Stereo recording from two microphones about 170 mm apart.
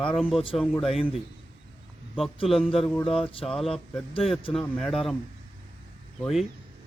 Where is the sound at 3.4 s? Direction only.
Centre (ahead or behind).